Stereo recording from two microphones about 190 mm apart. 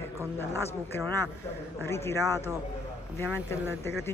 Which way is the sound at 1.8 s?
15° left (ahead or behind).